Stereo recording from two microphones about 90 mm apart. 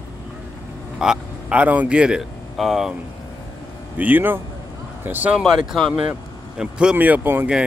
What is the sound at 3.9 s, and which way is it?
Speech, 20° right (ahead or behind).